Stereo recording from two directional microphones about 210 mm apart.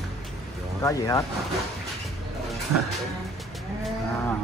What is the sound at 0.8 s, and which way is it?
Speech, 15° left (ahead or behind).